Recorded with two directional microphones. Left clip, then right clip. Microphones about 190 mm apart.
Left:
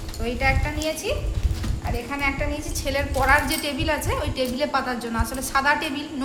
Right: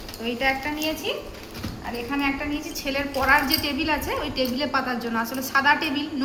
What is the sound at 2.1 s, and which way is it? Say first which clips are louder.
A woman's voice: even; 35° left (ahead or behind).